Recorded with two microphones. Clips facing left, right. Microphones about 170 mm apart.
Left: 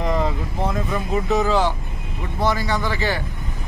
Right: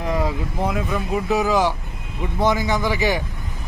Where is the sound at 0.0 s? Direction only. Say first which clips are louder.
Left 1 dB; 10° right (ahead or behind).